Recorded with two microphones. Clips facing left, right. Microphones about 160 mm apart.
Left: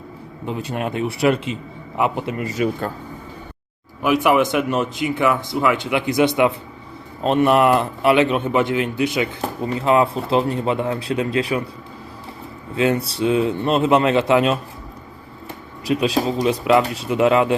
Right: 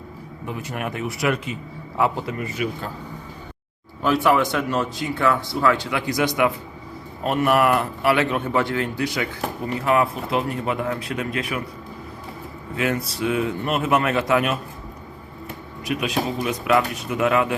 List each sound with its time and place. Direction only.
0.4 s a man's voice: 30° left (ahead or behind)
2.0 s a man's voice: 15° left (ahead or behind)
2.5 s speech: 40° left (ahead or behind)
4.0 s a man's voice: 15° left (ahead or behind); by 11.6 s 30° left (ahead or behind)
12.7 s a man's voice: 25° left (ahead or behind)